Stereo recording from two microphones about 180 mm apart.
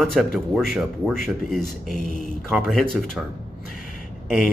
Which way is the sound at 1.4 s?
Centre (ahead or behind).